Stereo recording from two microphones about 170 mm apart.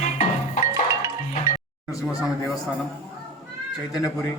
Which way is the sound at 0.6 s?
20° right (ahead or behind).